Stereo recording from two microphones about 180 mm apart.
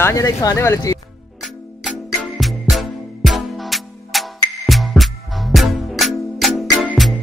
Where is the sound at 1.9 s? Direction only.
Centre (ahead or behind).